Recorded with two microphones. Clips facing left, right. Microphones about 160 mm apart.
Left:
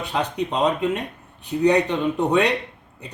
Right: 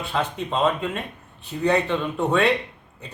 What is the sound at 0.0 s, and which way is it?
A man's voice, 15° left (ahead or behind).